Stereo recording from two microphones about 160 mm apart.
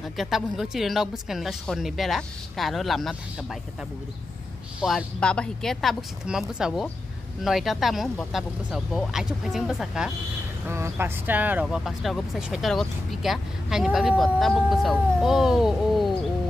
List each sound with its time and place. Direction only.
0.2 s speech: centre (ahead or behind)
4.7 s speech: centre (ahead or behind)
10.7 s speech: 15° right (ahead or behind)